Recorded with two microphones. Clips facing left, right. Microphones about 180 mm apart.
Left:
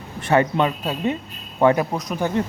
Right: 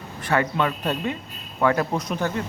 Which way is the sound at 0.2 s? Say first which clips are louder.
Left 4 dB; 25° left (ahead or behind).